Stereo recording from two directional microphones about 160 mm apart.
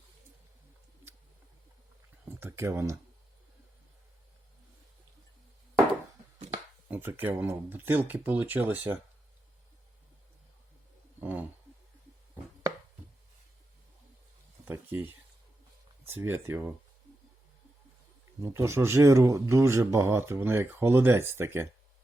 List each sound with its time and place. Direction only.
2.3 s speech: 15° right (ahead or behind)
6.9 s speech: 15° right (ahead or behind)
11.2 s a sound: 10° right (ahead or behind)
14.6 s a sound: 10° right (ahead or behind)
16.0 s speech: 15° right (ahead or behind)
18.4 s speech: 15° right (ahead or behind)